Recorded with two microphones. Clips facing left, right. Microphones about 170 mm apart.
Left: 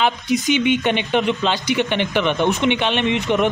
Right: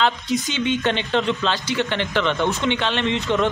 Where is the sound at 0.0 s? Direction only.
15° left (ahead or behind).